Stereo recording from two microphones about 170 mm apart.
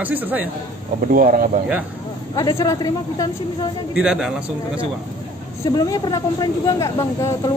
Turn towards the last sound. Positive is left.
turn(degrees=20)  # may be behind; listen again after turning